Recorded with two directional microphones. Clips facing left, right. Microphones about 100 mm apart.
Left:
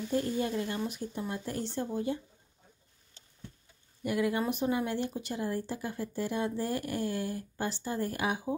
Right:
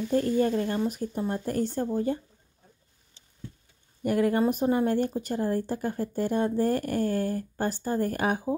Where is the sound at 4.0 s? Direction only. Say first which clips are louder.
Right 6 dB; 45° right (ahead or behind).